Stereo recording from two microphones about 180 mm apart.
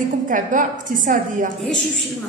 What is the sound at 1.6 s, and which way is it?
Dog, centre (ahead or behind).